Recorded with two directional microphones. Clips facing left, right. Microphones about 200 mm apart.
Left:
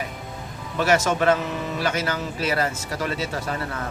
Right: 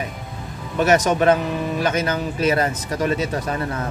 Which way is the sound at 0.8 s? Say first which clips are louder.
Right 4 dB; 20° right (ahead or behind).